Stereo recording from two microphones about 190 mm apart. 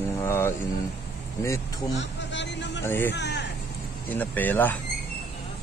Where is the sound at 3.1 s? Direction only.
65° left (ahead or behind).